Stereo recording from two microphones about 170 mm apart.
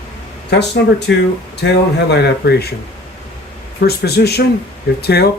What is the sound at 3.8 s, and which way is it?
Speech, 70° left (ahead or behind).